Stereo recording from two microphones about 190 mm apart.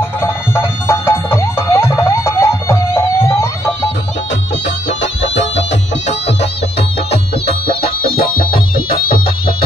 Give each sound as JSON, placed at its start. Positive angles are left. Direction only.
{"t": 0.2, "sound": "music", "side_deg": 15}
{"t": 4.8, "sound": "music", "side_deg": 70}
{"t": 7.1, "sound": "music", "side_deg": 55}